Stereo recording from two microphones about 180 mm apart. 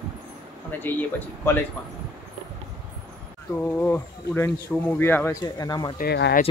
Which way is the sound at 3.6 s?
10° left (ahead or behind).